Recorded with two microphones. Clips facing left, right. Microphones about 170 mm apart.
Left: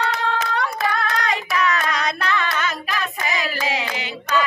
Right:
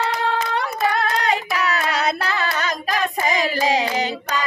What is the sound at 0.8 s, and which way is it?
Hands, 30° right (ahead or behind).